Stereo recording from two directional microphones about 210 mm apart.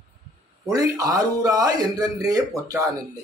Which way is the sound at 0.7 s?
15° right (ahead or behind).